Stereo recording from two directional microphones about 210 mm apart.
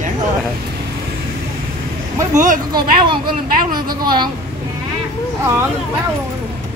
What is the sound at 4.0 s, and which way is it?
Speech, 20° right (ahead or behind).